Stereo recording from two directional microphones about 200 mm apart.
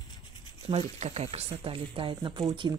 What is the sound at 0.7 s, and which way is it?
Speech, 30° right (ahead or behind).